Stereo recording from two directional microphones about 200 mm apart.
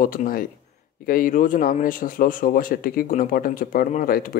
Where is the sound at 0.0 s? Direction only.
45° left (ahead or behind).